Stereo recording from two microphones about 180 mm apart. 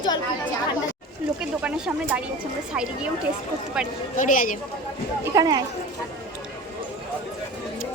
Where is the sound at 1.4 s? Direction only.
5° right (ahead or behind).